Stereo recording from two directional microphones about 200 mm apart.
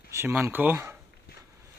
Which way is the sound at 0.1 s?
15° right (ahead or behind).